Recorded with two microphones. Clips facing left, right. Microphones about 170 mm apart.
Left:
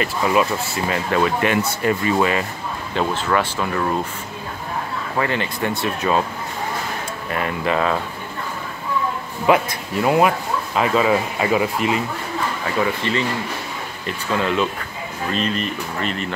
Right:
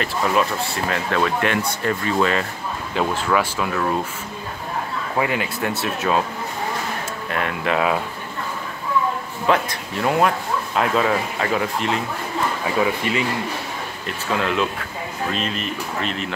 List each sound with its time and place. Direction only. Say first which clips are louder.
0.0 s speech: left 2 dB; 5° left (ahead or behind)
2.9 s speech: even; 5° right (ahead or behind)
5.1 s speech: even; 10° right (ahead or behind)
7.2 s speech: left 1 dB; centre (ahead or behind)
9.5 s speech: left 3 dB; 5° left (ahead or behind)
12.8 s speech: left 2 dB; 10° right (ahead or behind)